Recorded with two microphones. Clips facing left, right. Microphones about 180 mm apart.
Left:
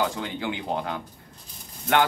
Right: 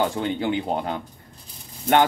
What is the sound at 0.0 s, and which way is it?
Speech, 25° right (ahead or behind).